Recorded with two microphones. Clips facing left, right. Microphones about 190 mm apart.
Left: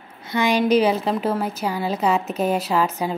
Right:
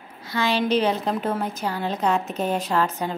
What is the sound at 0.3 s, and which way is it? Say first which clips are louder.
A woman's voice: left 4 dB; 15° left (ahead or behind).